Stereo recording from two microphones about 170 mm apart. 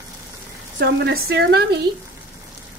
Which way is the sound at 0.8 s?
65° right (ahead or behind).